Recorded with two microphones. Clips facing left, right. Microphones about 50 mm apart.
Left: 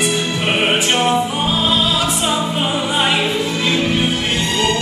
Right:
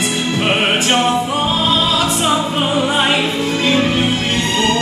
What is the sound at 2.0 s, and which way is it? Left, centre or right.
Music, right.